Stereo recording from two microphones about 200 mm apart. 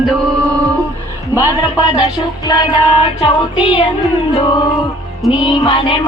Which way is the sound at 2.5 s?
20° left (ahead or behind).